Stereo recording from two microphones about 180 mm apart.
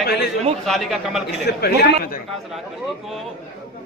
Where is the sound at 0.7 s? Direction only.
Centre (ahead or behind).